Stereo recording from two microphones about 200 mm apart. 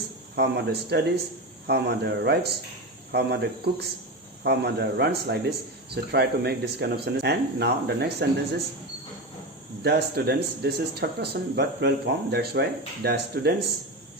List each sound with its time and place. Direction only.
0.3 s speech: 60° right (ahead or behind)
9.8 s speech: 55° right (ahead or behind)